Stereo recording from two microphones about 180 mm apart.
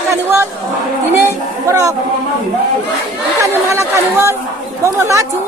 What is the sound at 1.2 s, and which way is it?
Speech, 15° right (ahead or behind).